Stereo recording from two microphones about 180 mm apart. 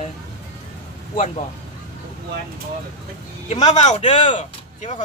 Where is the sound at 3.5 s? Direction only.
35° left (ahead or behind).